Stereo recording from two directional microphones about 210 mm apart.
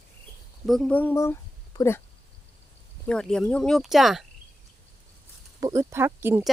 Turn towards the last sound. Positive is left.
turn(degrees=-10)  # may be behind; listen again after turning